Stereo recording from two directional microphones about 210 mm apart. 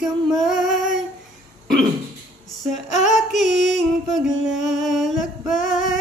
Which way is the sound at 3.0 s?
Centre (ahead or behind).